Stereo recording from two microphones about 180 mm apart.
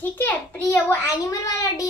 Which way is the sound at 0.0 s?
10° left (ahead or behind).